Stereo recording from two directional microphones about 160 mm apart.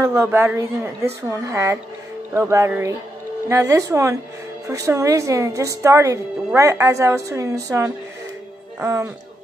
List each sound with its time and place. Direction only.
0.0 s a woman's voice: 15° right (ahead or behind)